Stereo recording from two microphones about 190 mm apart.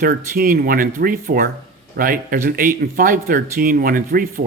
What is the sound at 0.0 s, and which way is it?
Speech, 50° right (ahead or behind).